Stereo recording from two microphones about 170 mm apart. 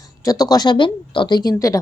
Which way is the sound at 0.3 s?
20° left (ahead or behind).